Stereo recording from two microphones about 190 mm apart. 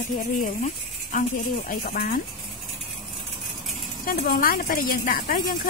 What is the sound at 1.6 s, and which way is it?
Speech, 45° left (ahead or behind).